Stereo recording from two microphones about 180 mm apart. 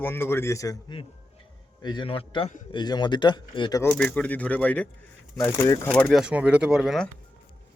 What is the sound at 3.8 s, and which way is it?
A man's voice, 10° left (ahead or behind).